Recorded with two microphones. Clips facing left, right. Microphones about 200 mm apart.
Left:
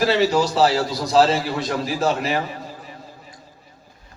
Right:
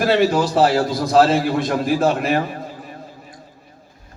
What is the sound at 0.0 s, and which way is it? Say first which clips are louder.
A man's voice: right 2 dB; 55° right (ahead or behind).